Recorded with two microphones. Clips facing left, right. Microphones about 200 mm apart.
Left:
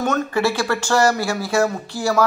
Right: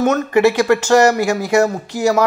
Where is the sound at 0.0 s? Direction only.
20° right (ahead or behind).